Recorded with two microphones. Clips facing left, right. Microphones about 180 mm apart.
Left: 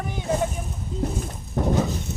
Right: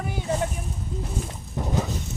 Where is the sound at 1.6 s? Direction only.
60° left (ahead or behind).